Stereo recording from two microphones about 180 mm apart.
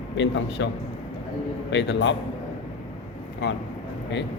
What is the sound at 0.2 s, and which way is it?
Speech, 85° left.